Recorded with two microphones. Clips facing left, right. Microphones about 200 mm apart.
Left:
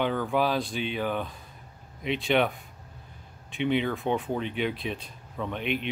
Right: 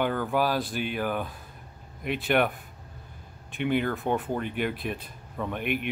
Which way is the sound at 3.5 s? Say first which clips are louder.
Even; 5° right (ahead or behind).